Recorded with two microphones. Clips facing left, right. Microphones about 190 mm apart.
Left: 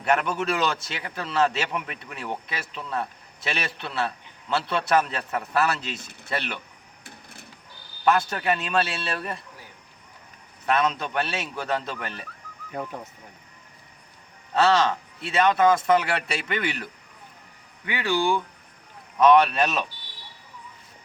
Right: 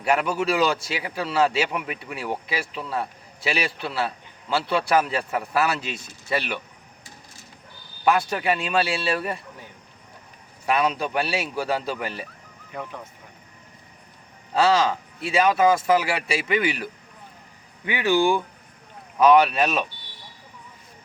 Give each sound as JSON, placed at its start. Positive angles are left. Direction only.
{"t": 0.0, "sound": "a man's voice", "side_deg": -5}
{"t": 8.0, "sound": "a man's voice", "side_deg": -10}
{"t": 10.7, "sound": "a man's voice", "side_deg": -5}
{"t": 14.5, "sound": "a man's voice", "side_deg": -5}
{"t": 17.8, "sound": "a man's voice", "side_deg": -15}